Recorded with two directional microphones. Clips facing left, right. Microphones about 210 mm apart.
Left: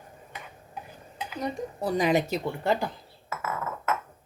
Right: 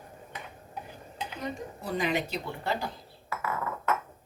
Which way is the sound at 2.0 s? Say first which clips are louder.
Left 5 dB; 40° left (ahead or behind).